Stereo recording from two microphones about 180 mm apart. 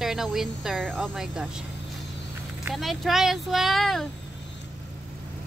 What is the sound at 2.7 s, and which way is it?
Speech, centre (ahead or behind).